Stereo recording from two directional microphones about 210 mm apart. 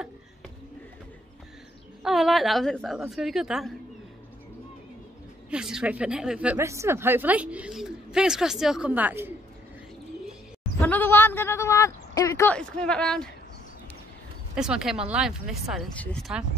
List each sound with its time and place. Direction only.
2.0 s speech: centre (ahead or behind)
5.5 s speech: 5° right (ahead or behind)
10.8 s speech: 10° left (ahead or behind)
14.5 s speech: 5° right (ahead or behind)